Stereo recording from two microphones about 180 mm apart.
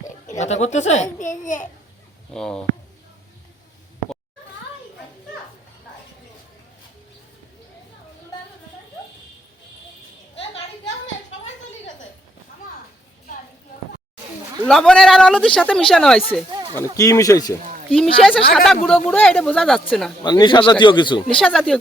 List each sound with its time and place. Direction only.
0.3 s a child's voice: 40° left (ahead or behind)
2.3 s a man's voice: 5° left (ahead or behind)
14.7 s a man's voice: 5° left (ahead or behind)
16.7 s speech: 20° left (ahead or behind)
17.9 s a man's voice: 5° left (ahead or behind)
20.2 s speech: 25° left (ahead or behind)
21.4 s a man's voice: 5° left (ahead or behind)